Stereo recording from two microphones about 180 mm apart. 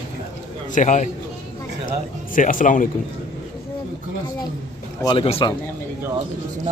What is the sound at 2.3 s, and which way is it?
Speech, 50° left (ahead or behind).